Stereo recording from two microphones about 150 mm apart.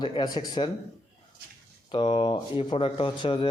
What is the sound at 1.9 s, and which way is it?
Speech, 35° left (ahead or behind).